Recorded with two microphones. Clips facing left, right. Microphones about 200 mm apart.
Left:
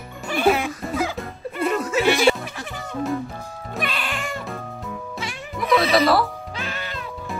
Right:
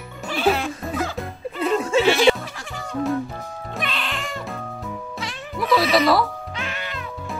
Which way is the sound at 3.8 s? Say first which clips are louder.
Left 2 dB; centre (ahead or behind).